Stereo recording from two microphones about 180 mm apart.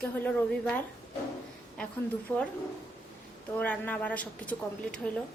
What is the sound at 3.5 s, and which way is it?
A woman's voice, 10° left (ahead or behind).